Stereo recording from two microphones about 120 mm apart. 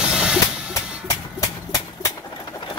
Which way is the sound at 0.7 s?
25° left (ahead or behind).